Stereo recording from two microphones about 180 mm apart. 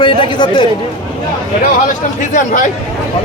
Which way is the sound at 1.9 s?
45° left (ahead or behind).